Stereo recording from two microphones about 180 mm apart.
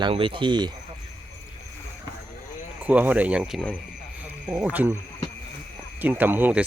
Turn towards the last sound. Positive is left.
turn(degrees=-10)  # may be behind; listen again after turning